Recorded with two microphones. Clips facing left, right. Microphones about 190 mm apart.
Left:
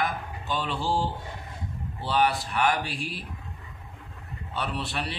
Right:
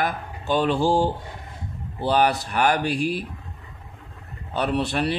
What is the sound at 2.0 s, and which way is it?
Speech, 45° right (ahead or behind).